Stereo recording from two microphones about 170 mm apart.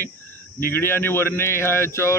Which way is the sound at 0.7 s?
15° left (ahead or behind).